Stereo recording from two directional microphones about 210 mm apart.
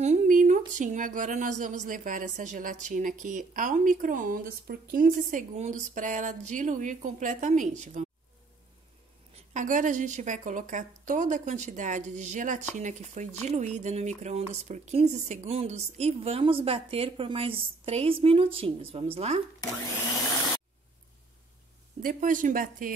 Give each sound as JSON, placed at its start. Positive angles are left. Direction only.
{"t": 0.0, "sound": "a woman's voice", "side_deg": -35}
{"t": 9.5, "sound": "a woman's voice", "side_deg": -35}
{"t": 22.0, "sound": "a woman's voice", "side_deg": -40}